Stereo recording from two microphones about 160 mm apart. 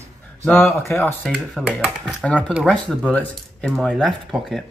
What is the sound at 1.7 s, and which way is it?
Speech, 5° right (ahead or behind).